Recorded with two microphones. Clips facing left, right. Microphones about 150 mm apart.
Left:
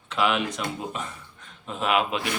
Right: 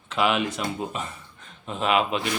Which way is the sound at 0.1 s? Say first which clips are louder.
Right 1 dB; centre (ahead or behind).